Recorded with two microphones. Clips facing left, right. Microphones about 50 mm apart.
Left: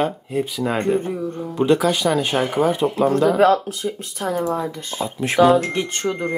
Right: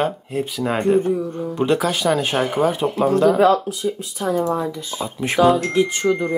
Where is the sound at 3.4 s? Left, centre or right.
Left.